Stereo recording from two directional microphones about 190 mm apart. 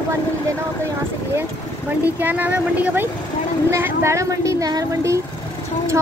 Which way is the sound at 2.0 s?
10° right (ahead or behind).